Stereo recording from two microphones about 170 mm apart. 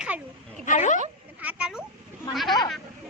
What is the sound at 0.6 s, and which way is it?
Speech, 45° left (ahead or behind).